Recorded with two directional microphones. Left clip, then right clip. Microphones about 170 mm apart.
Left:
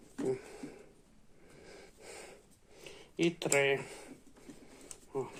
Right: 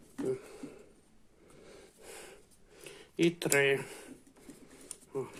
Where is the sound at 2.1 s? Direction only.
15° right (ahead or behind).